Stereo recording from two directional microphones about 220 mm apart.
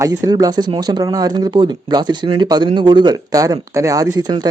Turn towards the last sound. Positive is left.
turn(degrees=-20)  # may be behind; listen again after turning